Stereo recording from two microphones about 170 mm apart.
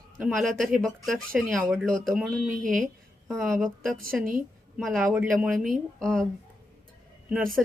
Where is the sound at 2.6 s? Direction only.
55° right (ahead or behind).